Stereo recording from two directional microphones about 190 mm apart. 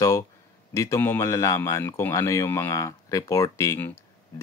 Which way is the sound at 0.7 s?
15° left (ahead or behind).